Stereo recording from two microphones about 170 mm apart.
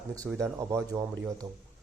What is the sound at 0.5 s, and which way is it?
Speech, 15° right (ahead or behind).